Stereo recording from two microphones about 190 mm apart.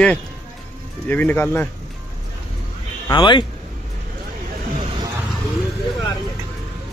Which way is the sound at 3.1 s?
25° left (ahead or behind).